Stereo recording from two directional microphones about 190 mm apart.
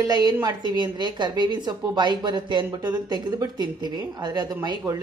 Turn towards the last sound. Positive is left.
turn(degrees=-20)  # may be behind; listen again after turning